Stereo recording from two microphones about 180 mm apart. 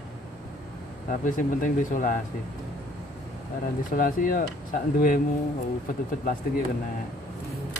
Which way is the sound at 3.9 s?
50° left (ahead or behind).